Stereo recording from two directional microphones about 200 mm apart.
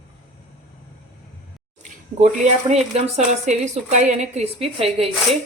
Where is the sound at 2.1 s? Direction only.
35° right (ahead or behind).